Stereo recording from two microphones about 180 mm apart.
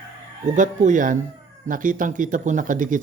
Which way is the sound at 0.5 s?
45° right (ahead or behind).